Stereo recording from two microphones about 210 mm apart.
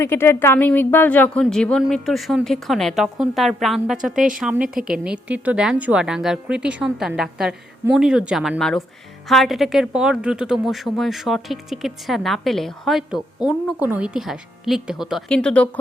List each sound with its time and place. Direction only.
0.0 s speech: 10° left (ahead or behind)
4.1 s speech: 40° right (ahead or behind)
4.4 s speech: 5° right (ahead or behind)